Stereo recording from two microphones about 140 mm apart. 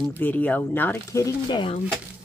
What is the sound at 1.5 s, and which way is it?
Speech, 35° left (ahead or behind).